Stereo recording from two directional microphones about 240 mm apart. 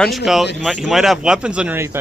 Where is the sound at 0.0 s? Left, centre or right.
Centre.